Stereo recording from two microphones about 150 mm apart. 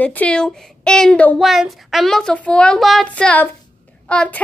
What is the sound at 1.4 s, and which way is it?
A woman's voice, centre (ahead or behind).